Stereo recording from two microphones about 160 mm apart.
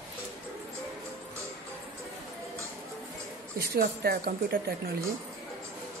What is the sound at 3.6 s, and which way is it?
Speech, 75° right (ahead or behind).